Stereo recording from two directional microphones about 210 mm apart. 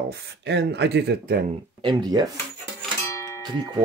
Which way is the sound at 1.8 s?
20° right (ahead or behind).